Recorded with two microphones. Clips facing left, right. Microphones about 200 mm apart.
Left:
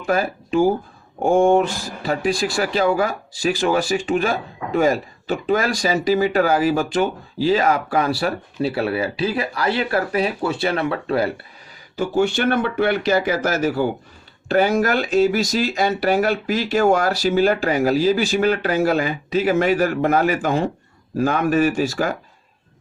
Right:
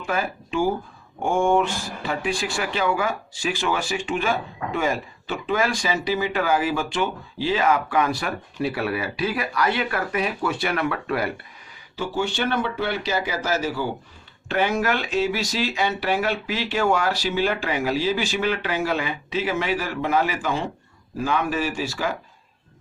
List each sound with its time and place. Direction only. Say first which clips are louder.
0.0 s speech: left 6 dB; 40° left (ahead or behind)
11.9 s speech: left 6 dB; 50° left (ahead or behind)
14.4 s speech: left 5 dB; 40° left (ahead or behind)